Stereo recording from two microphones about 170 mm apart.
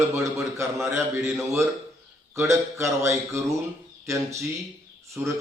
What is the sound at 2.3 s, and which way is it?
A man's voice, 15° right (ahead or behind).